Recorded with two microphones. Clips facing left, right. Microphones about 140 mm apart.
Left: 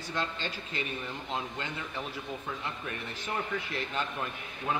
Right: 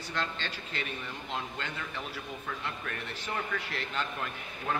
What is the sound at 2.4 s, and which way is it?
A man's voice, 15° left (ahead or behind).